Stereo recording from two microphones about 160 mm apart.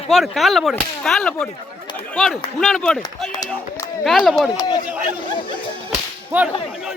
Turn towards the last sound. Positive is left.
turn(degrees=-10)  # may be behind; listen again after turning